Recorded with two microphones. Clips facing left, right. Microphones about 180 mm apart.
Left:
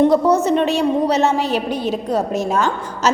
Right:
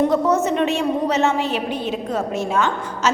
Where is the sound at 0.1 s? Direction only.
35° left (ahead or behind).